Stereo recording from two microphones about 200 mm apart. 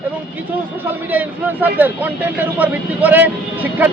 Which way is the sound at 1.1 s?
10° right (ahead or behind).